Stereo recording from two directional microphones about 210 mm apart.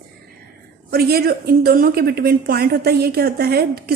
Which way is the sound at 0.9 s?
45° right (ahead or behind).